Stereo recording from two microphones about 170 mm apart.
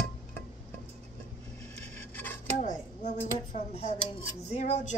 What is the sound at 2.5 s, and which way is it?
Speech, 50° left (ahead or behind).